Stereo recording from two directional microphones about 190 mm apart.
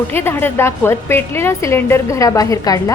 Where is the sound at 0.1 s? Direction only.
10° left (ahead or behind).